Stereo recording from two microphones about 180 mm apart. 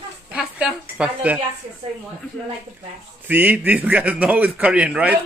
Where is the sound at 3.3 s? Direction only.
10° right (ahead or behind).